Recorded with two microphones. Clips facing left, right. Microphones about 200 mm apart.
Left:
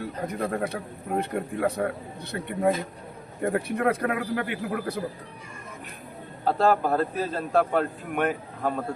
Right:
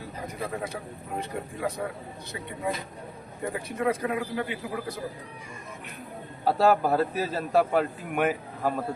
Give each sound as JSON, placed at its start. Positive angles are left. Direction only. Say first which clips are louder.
{"t": 0.0, "sound": "a man's voice", "louder": "left 5 dB", "side_deg": 60}
{"t": 6.4, "sound": "a man's voice", "louder": "even", "side_deg": -5}